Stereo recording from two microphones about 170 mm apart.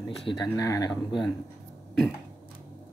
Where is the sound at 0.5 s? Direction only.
20° left (ahead or behind).